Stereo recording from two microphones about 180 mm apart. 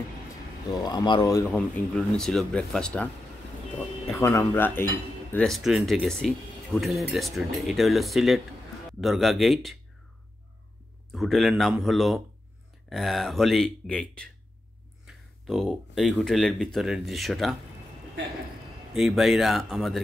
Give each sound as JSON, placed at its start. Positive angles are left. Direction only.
{"t": 0.8, "sound": "speech", "side_deg": 25}
{"t": 1.5, "sound": "speech", "side_deg": 0}
{"t": 4.2, "sound": "speech", "side_deg": 10}
{"t": 11.1, "sound": "speech", "side_deg": 0}
{"t": 18.9, "sound": "speech", "side_deg": 0}